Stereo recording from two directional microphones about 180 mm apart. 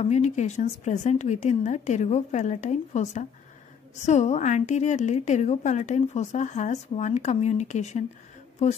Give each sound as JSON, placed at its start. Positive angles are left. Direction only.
{"t": 0.0, "sound": "a woman's voice", "side_deg": 40}